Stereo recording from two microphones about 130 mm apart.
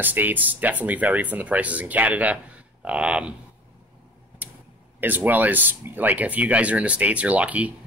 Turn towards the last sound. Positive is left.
turn(degrees=-10)  # may be behind; listen again after turning